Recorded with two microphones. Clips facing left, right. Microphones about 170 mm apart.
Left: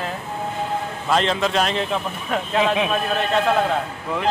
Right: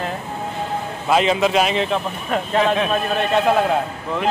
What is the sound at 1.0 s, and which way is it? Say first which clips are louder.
Speech: right 4 dB; 10° right (ahead or behind).